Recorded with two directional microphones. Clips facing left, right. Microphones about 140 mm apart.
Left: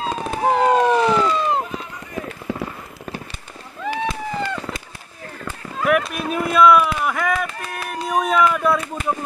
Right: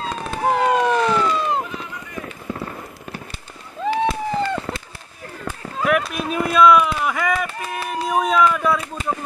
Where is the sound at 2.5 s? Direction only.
90° left.